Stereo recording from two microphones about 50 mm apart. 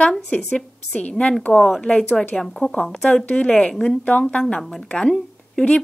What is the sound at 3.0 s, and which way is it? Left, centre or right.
A woman's voice, left.